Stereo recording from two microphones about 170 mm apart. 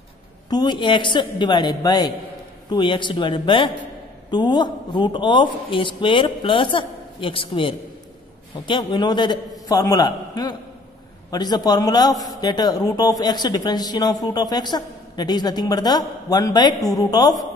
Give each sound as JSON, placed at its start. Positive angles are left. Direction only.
{"t": 0.5, "sound": "a man's voice", "side_deg": 25}